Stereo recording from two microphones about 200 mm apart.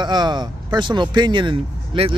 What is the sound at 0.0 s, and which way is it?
Speech, 20° right (ahead or behind).